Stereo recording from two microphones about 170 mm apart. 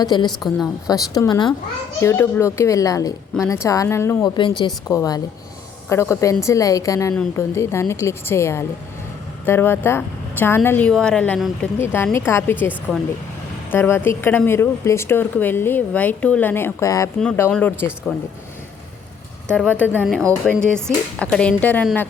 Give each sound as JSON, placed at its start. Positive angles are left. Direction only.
{"t": 0.0, "sound": "a woman's voice", "side_deg": 25}
{"t": 0.3, "sound": "a woman's voice", "side_deg": 0}
{"t": 0.9, "sound": "a woman's voice", "side_deg": 20}
{"t": 4.4, "sound": "a woman's voice", "side_deg": 30}
{"t": 19.5, "sound": "a woman's voice", "side_deg": 5}